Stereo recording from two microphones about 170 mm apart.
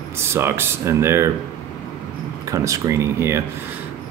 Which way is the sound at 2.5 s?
20° right (ahead or behind).